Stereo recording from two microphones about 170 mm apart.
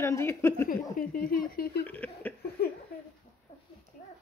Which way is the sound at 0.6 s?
55° left (ahead or behind).